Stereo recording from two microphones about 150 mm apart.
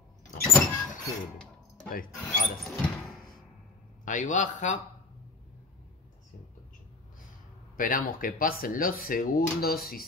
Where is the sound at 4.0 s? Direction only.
55° left (ahead or behind).